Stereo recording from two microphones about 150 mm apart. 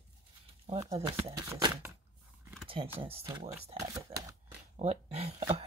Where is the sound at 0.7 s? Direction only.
35° right (ahead or behind).